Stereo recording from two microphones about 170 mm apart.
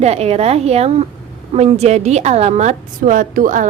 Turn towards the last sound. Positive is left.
turn(degrees=-50)  # may be behind; listen again after turning